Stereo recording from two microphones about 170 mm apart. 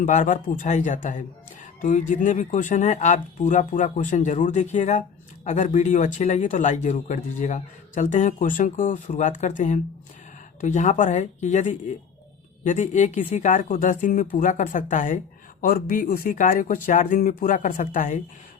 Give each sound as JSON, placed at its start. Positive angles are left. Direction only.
{"t": 0.0, "sound": "speech", "side_deg": 45}